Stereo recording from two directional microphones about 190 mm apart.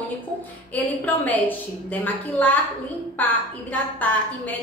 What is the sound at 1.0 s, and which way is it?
A woman's voice, 10° left (ahead or behind).